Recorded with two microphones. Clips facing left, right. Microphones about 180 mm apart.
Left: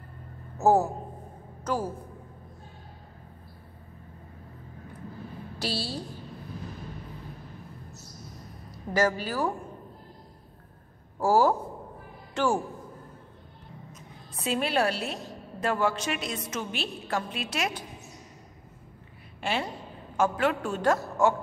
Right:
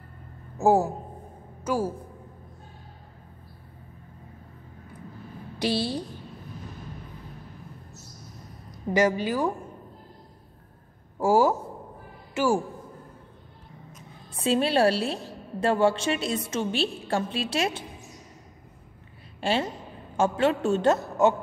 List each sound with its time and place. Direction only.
0.6 s a woman's voice: 10° right (ahead or behind)
5.6 s a man's voice: 20° right (ahead or behind)
8.9 s speech: 15° right (ahead or behind)
11.1 s speech: 10° right (ahead or behind)
14.3 s a woman's voice: 30° right (ahead or behind)
19.4 s a woman's voice: 30° right (ahead or behind)